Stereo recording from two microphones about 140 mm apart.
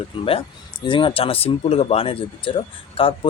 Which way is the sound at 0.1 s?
35° left (ahead or behind).